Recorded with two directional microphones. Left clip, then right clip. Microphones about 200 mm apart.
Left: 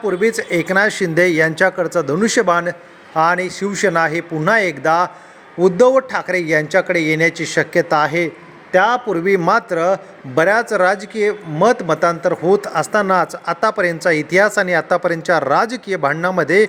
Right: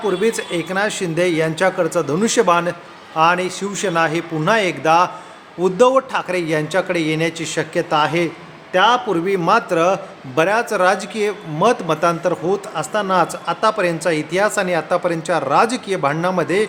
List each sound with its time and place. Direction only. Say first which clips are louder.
0.0 s a man's voice: left 1 dB; 20° left (ahead or behind)